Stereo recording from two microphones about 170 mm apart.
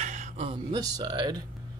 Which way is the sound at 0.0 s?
45° right (ahead or behind).